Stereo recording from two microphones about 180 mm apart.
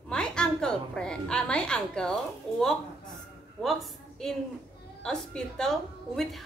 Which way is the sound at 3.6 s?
Centre (ahead or behind).